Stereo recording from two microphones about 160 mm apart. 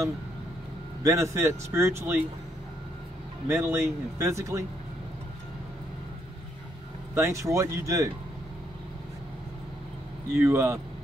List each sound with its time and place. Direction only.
1.0 s speech: 20° right (ahead or behind)
3.4 s speech: 15° right (ahead or behind)
7.2 s speech: 20° right (ahead or behind)
10.3 s speech: 15° right (ahead or behind)